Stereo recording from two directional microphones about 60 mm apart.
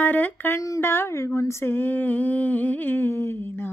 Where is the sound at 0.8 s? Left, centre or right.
Left.